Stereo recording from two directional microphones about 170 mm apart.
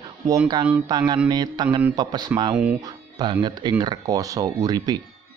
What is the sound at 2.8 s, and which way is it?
Speech, 25° right (ahead or behind).